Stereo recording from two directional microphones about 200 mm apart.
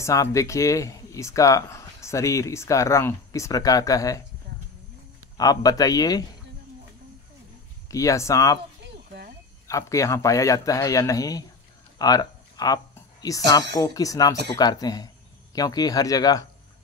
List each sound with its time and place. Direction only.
0.0 s speech: 15° left (ahead or behind)
5.4 s speech: 20° left (ahead or behind)
7.9 s speech: 15° left (ahead or behind)
9.7 s speech: 15° left (ahead or behind)
12.0 s a sound: 20° left (ahead or behind)
13.5 s speech: 20° left (ahead or behind)